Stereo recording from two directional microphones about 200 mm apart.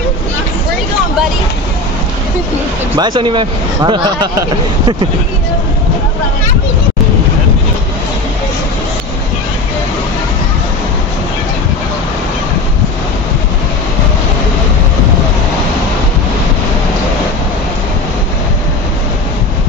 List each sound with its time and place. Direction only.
3.0 s speech: 25° right (ahead or behind)